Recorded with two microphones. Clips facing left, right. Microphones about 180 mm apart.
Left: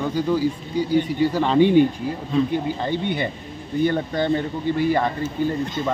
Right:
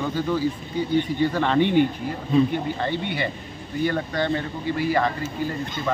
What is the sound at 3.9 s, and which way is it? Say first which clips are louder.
Speech: left 3 dB; 20° left (ahead or behind).